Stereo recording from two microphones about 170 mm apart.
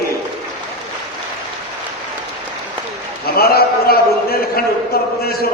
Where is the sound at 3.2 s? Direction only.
65° left (ahead or behind).